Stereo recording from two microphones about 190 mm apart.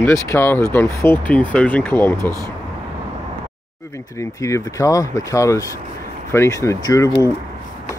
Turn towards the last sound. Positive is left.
turn(degrees=15)  # may be behind; listen again after turning